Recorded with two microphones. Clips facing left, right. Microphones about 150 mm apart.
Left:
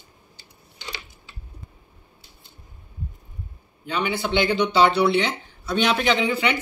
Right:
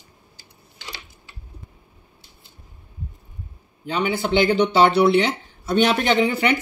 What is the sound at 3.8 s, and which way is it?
Speech, 40° right (ahead or behind).